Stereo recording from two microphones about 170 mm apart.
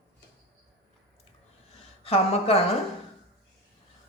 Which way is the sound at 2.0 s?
35° left (ahead or behind).